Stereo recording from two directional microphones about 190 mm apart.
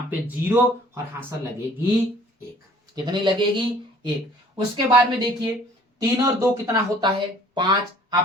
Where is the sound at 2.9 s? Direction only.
25° right (ahead or behind).